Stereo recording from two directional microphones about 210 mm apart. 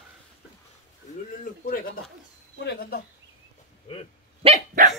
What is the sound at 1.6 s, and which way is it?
Speech, 45° left (ahead or behind).